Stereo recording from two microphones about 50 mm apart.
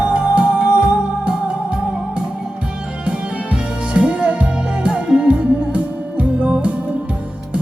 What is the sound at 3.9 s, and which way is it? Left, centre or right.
Music, right.